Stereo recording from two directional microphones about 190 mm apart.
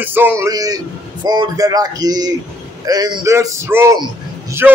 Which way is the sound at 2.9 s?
20° right (ahead or behind).